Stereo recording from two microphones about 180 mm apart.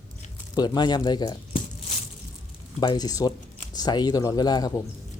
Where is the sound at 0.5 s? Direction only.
20° left (ahead or behind).